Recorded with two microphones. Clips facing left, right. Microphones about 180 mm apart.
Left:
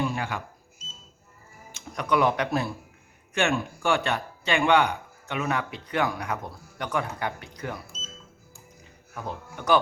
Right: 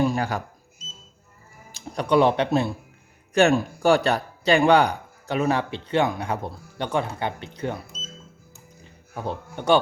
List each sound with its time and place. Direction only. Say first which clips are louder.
0.0 s speech: right 6 dB; 40° right (ahead or behind)
1.7 s speech: right 5 dB; 30° right (ahead or behind)
3.3 s speech: right 7 dB; 35° right (ahead or behind)
8.5 s a sound: right 2 dB; 30° right (ahead or behind)